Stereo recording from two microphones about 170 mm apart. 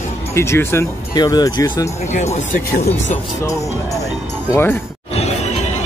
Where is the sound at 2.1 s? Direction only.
45° left (ahead or behind).